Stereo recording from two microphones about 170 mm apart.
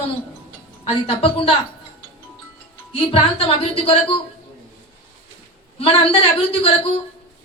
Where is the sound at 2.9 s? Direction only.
30° left (ahead or behind).